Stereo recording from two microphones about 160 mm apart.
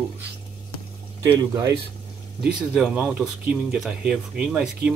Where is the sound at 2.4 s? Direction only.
5° right (ahead or behind).